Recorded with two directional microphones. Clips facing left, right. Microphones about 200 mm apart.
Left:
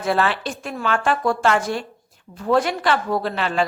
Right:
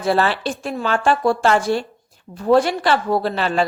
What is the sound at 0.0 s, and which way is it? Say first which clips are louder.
A woman's voice: right 2 dB; 35° right (ahead or behind).